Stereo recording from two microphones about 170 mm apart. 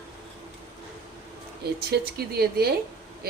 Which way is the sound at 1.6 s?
65° right (ahead or behind).